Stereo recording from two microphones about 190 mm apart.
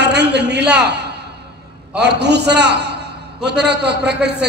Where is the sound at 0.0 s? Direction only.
60° right (ahead or behind).